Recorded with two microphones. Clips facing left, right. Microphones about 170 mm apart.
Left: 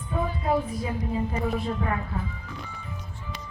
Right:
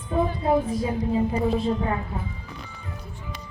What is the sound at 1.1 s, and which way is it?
Speech, 25° right (ahead or behind).